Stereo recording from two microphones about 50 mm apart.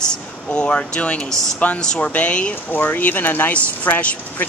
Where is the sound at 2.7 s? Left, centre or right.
Left.